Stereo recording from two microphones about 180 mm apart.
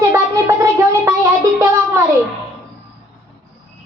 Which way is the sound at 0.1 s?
15° right (ahead or behind).